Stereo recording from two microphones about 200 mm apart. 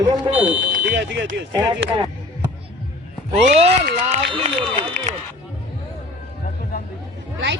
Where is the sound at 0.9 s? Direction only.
60° right (ahead or behind).